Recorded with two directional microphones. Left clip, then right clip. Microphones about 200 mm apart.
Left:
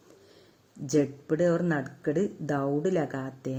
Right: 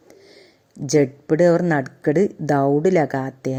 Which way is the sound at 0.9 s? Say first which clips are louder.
Right 9 dB; 30° right (ahead or behind).